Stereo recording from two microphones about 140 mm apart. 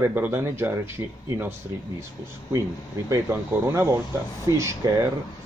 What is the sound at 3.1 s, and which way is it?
Speech, 20° right (ahead or behind).